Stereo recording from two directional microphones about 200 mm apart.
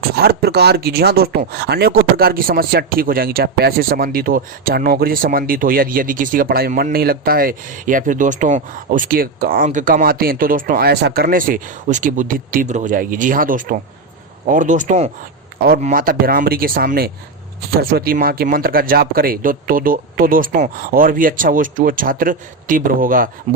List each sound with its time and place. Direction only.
0.2 s speech: 55° right (ahead or behind)